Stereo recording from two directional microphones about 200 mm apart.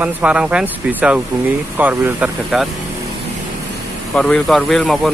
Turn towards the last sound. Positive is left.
turn(degrees=0)  # may be behind; listen again after turning